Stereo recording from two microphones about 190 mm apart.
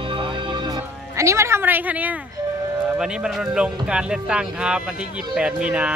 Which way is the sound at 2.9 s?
5° right (ahead or behind).